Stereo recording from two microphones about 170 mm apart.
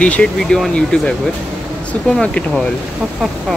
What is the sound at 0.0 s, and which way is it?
Speech, 5° left (ahead or behind).